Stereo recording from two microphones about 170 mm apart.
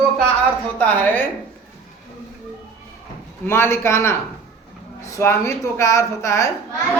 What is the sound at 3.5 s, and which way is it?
Speech, 15° left (ahead or behind).